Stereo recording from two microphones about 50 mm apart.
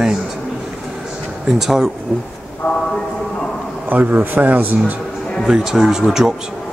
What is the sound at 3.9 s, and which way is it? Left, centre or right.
Speech, right.